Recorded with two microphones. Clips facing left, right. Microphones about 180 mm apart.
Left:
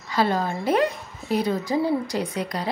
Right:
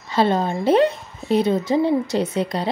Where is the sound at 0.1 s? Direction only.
25° right (ahead or behind).